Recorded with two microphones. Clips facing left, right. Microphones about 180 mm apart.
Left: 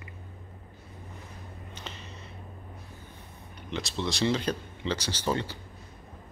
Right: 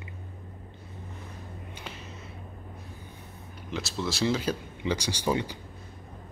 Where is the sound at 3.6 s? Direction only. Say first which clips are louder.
Even; 5° right (ahead or behind).